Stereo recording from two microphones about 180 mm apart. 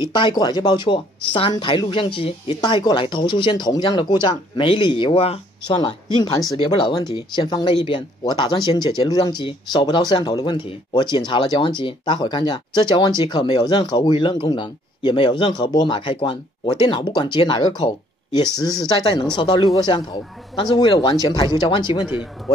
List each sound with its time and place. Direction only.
0.0 s speech: 25° left (ahead or behind)